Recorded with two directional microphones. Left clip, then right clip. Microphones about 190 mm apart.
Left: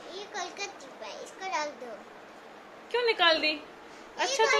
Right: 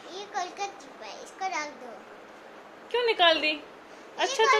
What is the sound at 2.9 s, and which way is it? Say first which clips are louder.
A woman's voice: right 2 dB; 10° right (ahead or behind).